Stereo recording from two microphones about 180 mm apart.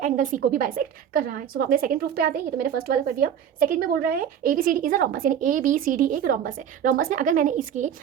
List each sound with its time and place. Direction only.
0.0 s a woman's voice: 45° right (ahead or behind)